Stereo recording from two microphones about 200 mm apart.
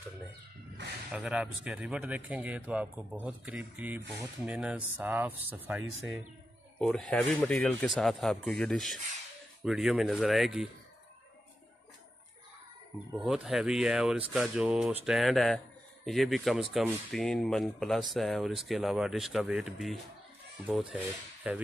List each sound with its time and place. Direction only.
1.1 s speech: 5° right (ahead or behind)
6.8 s speech: centre (ahead or behind)
13.1 s speech: 5° right (ahead or behind)